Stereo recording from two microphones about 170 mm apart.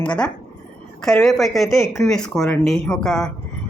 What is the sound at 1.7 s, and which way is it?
Speech, 15° left (ahead or behind).